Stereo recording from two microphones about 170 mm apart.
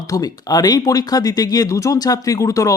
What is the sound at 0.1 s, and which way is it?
Speech, 20° left (ahead or behind).